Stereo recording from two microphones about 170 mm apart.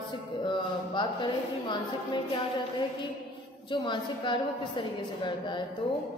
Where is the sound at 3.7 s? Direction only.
30° left (ahead or behind).